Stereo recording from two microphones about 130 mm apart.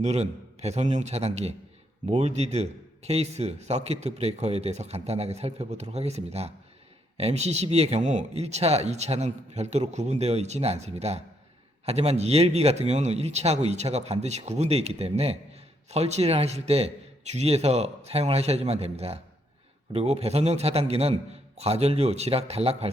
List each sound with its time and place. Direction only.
0.0 s a man's voice: 55° right (ahead or behind)